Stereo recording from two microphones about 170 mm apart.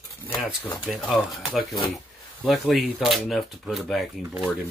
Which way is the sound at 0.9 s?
Centre (ahead or behind).